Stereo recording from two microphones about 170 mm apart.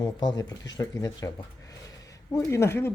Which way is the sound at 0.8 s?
20° left (ahead or behind).